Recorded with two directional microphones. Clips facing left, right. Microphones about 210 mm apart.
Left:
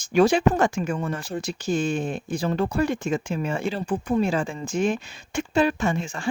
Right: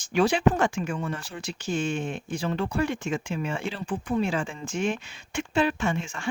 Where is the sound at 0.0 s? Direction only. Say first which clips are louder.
Left 4 dB; 45° left (ahead or behind).